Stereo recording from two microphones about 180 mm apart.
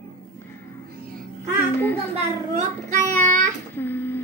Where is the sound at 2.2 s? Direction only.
40° right (ahead or behind).